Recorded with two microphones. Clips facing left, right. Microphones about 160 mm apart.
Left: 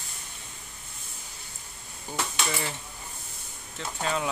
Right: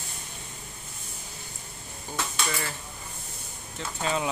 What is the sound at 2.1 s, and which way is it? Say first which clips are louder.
Speech: left 1 dB; 15° left (ahead or behind).